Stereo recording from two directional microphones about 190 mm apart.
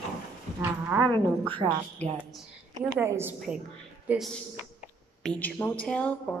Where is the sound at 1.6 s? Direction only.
30° right (ahead or behind).